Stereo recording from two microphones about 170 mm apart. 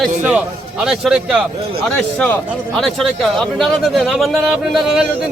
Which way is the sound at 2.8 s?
Centre (ahead or behind).